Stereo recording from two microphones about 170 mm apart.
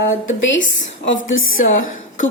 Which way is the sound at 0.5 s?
90° left.